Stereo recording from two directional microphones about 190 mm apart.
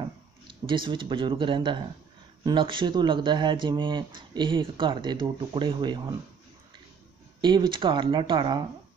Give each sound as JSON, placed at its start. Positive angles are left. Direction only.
{"t": 0.7, "sound": "speech", "side_deg": -25}
{"t": 7.4, "sound": "speech", "side_deg": -25}